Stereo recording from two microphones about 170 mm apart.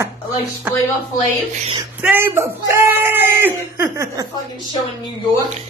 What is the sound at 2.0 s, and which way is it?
Speech, 10° right (ahead or behind).